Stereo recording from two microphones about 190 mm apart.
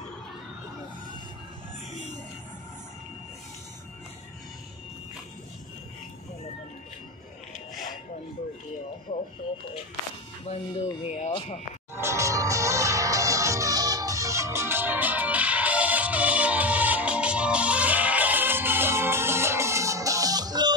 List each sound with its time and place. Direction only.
9.1 s radio: 30° left (ahead or behind)
10.5 s speech: 30° left (ahead or behind)
11.9 s music: 15° right (ahead or behind)